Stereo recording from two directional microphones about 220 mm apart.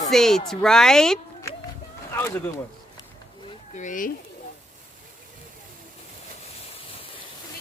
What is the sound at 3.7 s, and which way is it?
Speech, 35° left (ahead or behind).